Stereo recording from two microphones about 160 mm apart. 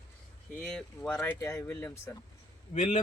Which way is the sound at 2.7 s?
45° left (ahead or behind).